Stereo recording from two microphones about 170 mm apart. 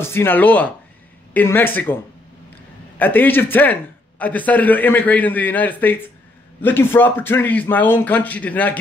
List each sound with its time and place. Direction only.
0.0 s speech: 15° left (ahead or behind)
3.0 s speech: 10° left (ahead or behind)